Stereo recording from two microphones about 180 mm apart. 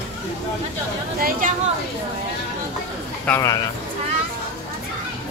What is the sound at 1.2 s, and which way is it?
Speech, 55° right (ahead or behind).